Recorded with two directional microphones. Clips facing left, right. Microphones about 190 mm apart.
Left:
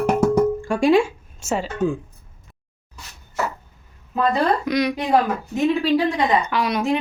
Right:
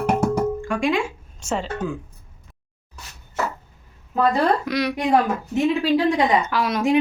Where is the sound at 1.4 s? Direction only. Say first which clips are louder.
Left 2 dB; 5° left (ahead or behind).